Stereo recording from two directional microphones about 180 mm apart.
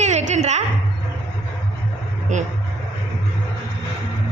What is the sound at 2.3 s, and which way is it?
Speech, 45° right (ahead or behind).